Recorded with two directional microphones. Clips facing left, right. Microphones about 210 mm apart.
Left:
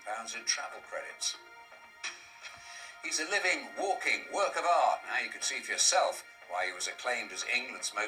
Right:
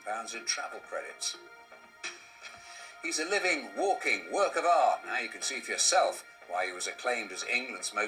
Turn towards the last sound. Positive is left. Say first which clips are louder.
# right 4 dB
turn(degrees=-35)  # may be behind; listen again after turning